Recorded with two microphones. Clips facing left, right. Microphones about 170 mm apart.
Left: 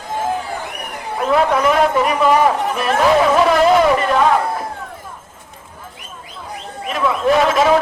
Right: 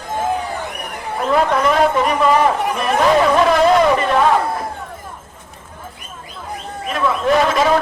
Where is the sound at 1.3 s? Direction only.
5° left (ahead or behind).